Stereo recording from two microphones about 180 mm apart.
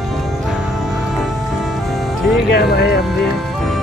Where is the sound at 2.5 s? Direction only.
65° left (ahead or behind).